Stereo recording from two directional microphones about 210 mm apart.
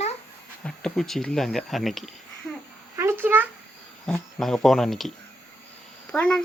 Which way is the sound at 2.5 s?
5° left (ahead or behind).